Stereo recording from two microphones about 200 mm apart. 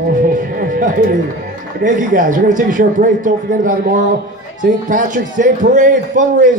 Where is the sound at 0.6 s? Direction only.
45° right (ahead or behind).